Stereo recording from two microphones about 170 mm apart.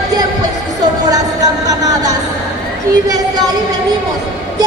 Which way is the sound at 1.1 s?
20° right (ahead or behind).